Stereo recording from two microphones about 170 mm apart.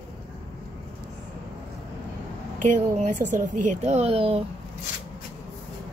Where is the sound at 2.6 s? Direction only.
45° right (ahead or behind).